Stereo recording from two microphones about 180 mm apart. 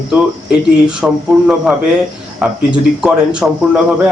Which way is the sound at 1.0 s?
5° right (ahead or behind).